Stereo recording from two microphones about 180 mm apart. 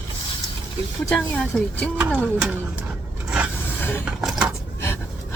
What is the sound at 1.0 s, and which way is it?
Speech, 5° left (ahead or behind).